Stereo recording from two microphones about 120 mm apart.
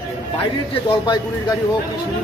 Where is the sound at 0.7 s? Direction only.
40° left (ahead or behind).